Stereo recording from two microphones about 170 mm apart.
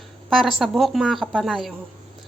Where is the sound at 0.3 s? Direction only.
Centre (ahead or behind).